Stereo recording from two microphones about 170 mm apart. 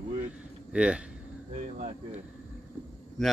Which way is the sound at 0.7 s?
5° right (ahead or behind).